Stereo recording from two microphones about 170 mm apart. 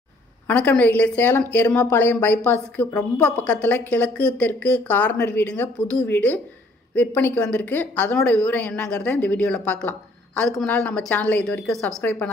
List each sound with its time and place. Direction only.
0.5 s a woman's voice: 10° left (ahead or behind)